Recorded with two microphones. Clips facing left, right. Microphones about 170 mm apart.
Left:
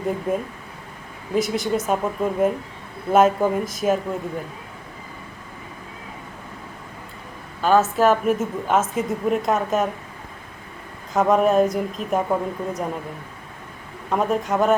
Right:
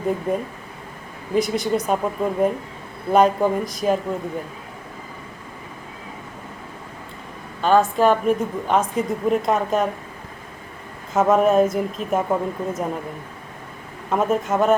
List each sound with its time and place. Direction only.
0.3 s a woman's voice: centre (ahead or behind)
7.6 s a woman's voice: 5° left (ahead or behind)
11.1 s a woman's voice: centre (ahead or behind)
14.1 s a woman's voice: centre (ahead or behind)